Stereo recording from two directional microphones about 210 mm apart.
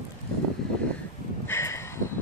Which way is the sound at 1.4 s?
10° left (ahead or behind).